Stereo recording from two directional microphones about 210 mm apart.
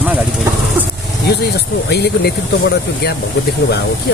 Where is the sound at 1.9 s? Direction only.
50° left (ahead or behind).